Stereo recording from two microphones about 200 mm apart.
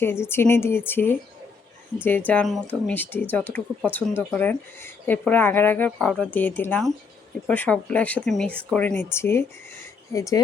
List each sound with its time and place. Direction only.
0.0 s speech: 10° left (ahead or behind)